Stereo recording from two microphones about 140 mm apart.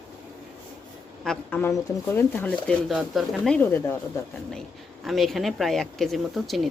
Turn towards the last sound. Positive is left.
turn(degrees=0)  # may be behind; listen again after turning